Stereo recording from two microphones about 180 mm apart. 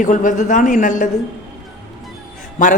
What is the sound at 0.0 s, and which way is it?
A woman's voice, 45° left (ahead or behind).